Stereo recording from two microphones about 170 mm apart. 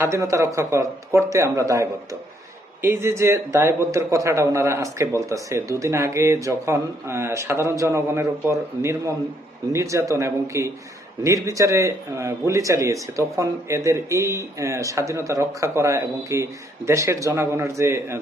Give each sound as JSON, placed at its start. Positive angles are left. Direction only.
{"t": 0.0, "sound": "speech", "side_deg": -15}